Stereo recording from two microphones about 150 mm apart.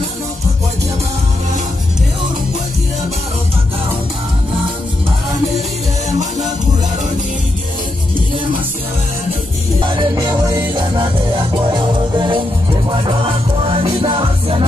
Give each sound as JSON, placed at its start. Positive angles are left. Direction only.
{"t": 9.8, "sound": "music", "side_deg": -35}